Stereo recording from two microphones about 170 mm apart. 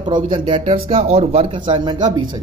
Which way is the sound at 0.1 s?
30° right (ahead or behind).